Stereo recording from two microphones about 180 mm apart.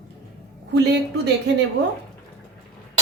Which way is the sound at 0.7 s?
70° right (ahead or behind).